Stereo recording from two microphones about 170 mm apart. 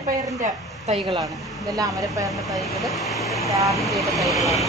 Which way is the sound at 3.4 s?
20° right (ahead or behind).